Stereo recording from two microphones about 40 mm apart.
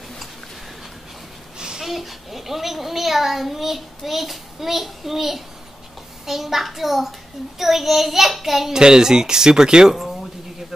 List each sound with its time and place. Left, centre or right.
1.6 s a sound: centre
1.9 s a child's voice: centre
8.7 s speech: centre